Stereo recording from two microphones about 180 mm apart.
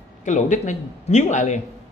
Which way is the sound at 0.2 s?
45° left (ahead or behind).